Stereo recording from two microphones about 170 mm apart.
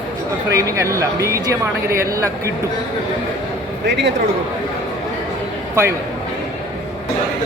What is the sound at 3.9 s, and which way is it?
Speech, 90° right.